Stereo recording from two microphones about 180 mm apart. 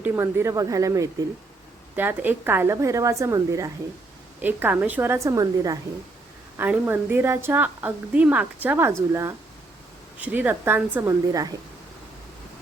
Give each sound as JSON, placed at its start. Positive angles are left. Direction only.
{"t": 0.0, "sound": "a woman's voice", "side_deg": -15}